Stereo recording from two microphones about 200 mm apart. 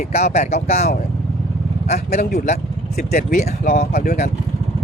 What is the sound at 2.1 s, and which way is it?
Speech, 50° left (ahead or behind).